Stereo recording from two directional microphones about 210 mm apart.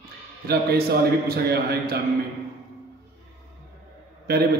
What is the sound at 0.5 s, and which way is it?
A man's voice, 50° right (ahead or behind).